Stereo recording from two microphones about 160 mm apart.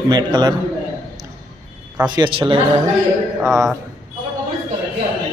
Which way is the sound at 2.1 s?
30° right (ahead or behind).